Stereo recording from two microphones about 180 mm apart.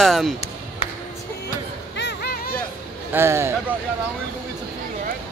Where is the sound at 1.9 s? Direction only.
70° left (ahead or behind).